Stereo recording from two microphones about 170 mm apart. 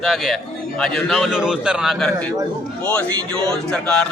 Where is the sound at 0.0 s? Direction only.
Centre (ahead or behind).